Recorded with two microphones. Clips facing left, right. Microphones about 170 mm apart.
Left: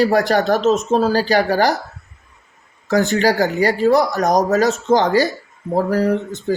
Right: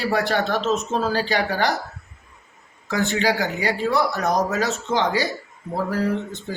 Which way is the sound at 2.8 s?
40° left (ahead or behind).